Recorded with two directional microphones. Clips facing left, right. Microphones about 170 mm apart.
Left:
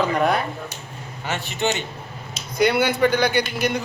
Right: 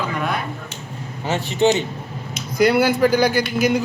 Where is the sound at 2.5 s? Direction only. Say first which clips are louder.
Right 3 dB; centre (ahead or behind).